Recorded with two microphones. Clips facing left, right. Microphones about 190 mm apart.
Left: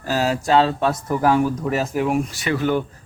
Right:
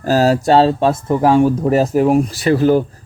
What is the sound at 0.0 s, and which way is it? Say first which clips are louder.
Speech: right 8 dB; 40° right (ahead or behind).